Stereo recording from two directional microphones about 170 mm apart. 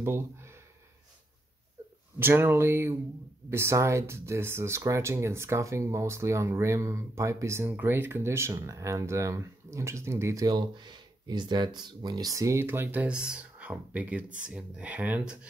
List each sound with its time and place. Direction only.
0.0 s speech: 15° right (ahead or behind)
2.1 s speech: 15° right (ahead or behind)